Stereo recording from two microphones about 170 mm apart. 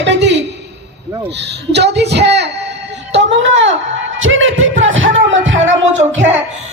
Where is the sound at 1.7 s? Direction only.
85° right.